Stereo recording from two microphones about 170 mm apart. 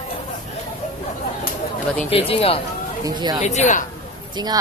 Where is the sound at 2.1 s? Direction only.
35° left (ahead or behind).